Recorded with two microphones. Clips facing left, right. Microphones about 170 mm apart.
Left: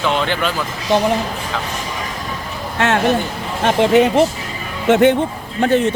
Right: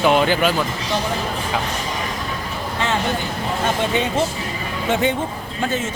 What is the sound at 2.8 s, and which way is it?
A man's voice, 70° left (ahead or behind).